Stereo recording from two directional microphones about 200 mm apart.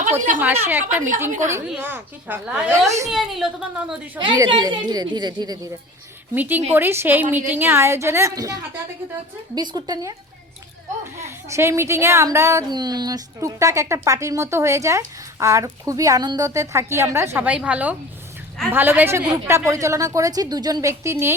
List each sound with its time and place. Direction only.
0.3 s speech: 10° right (ahead or behind)
3.1 s a woman's voice: centre (ahead or behind)
4.2 s a woman's voice: 25° right (ahead or behind)
6.3 s speech: 10° right (ahead or behind)
9.6 s a woman's voice: 20° right (ahead or behind)